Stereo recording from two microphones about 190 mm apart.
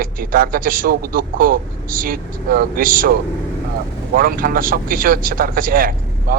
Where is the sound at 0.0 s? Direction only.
50° right (ahead or behind).